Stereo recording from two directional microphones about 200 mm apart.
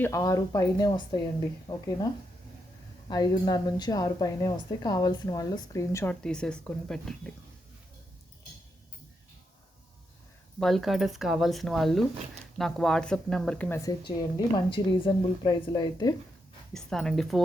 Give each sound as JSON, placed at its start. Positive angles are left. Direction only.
{"t": 0.0, "sound": "a woman's voice", "side_deg": 15}
{"t": 3.1, "sound": "a woman's voice", "side_deg": 20}
{"t": 10.6, "sound": "a woman's voice", "side_deg": 0}
{"t": 16.7, "sound": "speech", "side_deg": 5}